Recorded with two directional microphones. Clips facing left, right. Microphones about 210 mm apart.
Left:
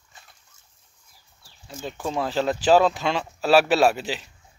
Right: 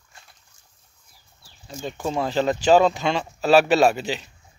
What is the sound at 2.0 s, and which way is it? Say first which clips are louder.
Speech: right 2 dB; centre (ahead or behind).